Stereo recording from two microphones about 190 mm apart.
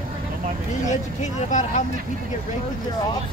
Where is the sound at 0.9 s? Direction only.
40° left (ahead or behind).